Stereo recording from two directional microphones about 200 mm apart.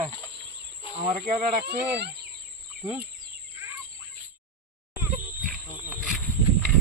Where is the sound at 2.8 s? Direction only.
15° right (ahead or behind).